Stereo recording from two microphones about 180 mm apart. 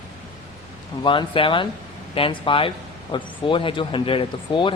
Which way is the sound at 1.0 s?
30° left (ahead or behind).